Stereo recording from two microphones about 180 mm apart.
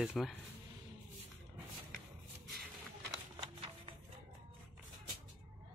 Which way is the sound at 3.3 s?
30° right (ahead or behind).